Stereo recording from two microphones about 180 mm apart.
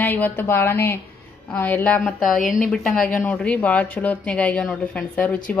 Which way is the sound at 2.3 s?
45° left (ahead or behind).